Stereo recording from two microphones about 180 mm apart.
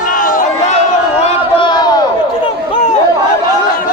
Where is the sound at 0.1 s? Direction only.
50° left (ahead or behind).